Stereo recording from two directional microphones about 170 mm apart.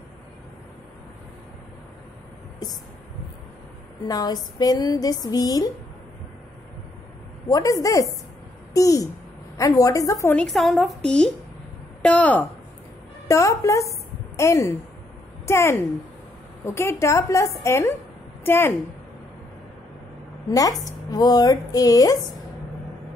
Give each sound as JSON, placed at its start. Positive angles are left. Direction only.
{"t": 4.1, "sound": "speech", "side_deg": 25}
{"t": 7.4, "sound": "a woman's voice", "side_deg": 20}
{"t": 10.3, "sound": "a woman's voice", "side_deg": 0}
{"t": 12.0, "sound": "a woman's voice", "side_deg": 5}
{"t": 20.4, "sound": "speech", "side_deg": 20}